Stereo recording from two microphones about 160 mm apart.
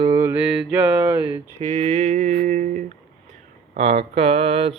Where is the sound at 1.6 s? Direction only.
40° right (ahead or behind).